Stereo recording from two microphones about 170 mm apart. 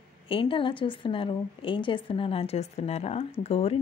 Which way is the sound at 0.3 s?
30° left (ahead or behind).